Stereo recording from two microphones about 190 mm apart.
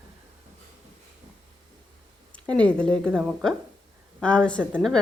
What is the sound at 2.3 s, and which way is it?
A woman's voice, 5° left (ahead or behind).